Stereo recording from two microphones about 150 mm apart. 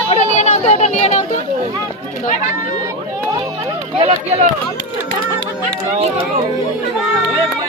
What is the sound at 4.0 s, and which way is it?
Speech, 40° right (ahead or behind).